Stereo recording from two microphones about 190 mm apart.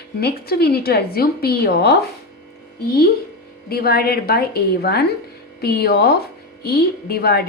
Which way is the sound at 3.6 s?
55° left (ahead or behind).